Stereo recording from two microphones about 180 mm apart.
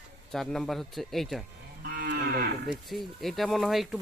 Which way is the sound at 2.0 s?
60° right (ahead or behind).